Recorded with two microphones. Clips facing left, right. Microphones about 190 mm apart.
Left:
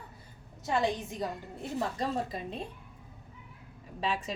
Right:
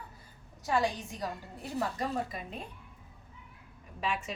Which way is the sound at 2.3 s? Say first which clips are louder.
Left 4 dB; 30° left (ahead or behind).